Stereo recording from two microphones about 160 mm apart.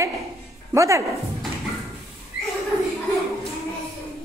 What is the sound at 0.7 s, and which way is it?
Speech, 20° right (ahead or behind).